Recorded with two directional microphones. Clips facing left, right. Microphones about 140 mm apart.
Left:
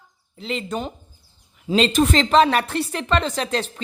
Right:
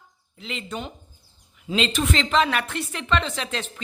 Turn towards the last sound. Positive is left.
turn(degrees=40)  # may be behind; listen again after turning